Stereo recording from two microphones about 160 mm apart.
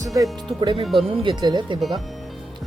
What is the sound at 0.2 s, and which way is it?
Speech, 30° right (ahead or behind).